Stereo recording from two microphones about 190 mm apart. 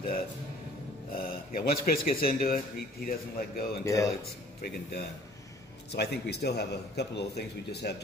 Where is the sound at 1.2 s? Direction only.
50° left (ahead or behind).